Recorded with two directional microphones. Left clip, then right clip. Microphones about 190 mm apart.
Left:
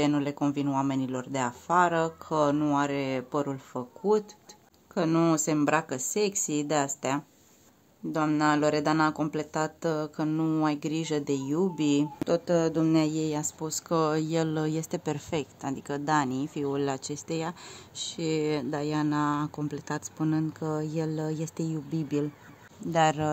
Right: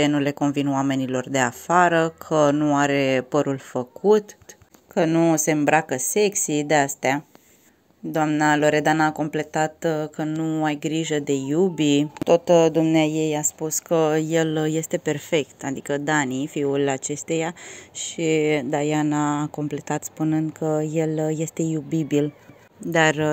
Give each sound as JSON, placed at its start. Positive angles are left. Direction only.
{"t": 0.0, "sound": "speech", "side_deg": -15}
{"t": 8.4, "sound": "speech", "side_deg": -10}